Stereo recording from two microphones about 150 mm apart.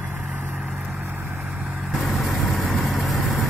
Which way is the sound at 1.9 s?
Centre (ahead or behind).